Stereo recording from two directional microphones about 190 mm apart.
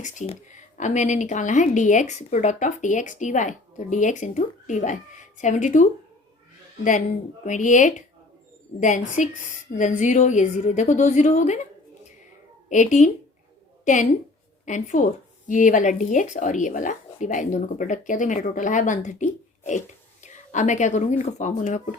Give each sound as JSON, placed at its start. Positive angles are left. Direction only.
{"t": 0.0, "sound": "speech", "side_deg": 40}
{"t": 7.4, "sound": "speech", "side_deg": 40}
{"t": 12.6, "sound": "a woman's voice", "side_deg": 40}